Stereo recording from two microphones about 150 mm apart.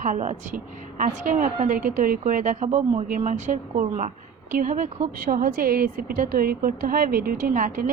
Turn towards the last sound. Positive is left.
turn(degrees=-65)  # may be behind; listen again after turning